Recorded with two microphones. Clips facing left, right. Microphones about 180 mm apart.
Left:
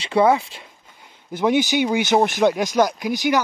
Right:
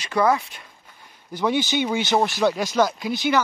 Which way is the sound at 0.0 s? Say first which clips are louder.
Left 4 dB; 25° left (ahead or behind).